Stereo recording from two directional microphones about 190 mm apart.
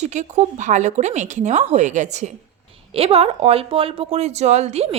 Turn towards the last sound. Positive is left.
turn(degrees=-35)  # may be behind; listen again after turning